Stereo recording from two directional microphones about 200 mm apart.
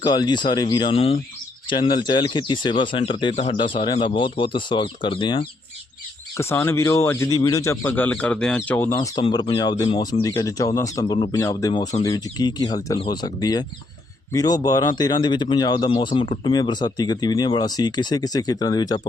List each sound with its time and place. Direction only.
0.0 s speech: 20° left (ahead or behind)
6.3 s speech: 15° left (ahead or behind)
9.0 s speech: 25° left (ahead or behind)